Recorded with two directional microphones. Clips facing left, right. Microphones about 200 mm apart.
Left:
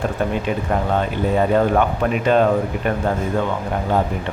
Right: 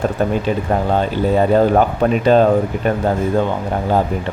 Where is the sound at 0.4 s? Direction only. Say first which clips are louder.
Right 3 dB; 30° right (ahead or behind).